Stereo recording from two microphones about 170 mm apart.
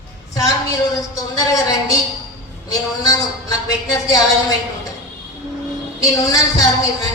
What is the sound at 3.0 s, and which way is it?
A man's voice, 20° left (ahead or behind).